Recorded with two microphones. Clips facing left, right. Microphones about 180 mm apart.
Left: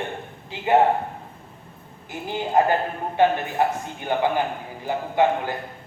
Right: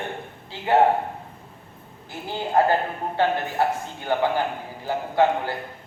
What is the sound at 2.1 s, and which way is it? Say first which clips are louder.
A man's voice: left 1 dB; 15° left (ahead or behind).